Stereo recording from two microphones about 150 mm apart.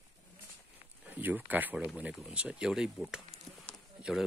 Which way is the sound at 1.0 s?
10° right (ahead or behind).